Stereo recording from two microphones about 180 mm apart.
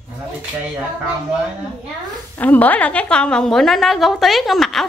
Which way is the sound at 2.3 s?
10° left (ahead or behind).